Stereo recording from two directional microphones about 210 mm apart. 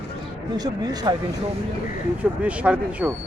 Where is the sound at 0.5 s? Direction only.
20° right (ahead or behind).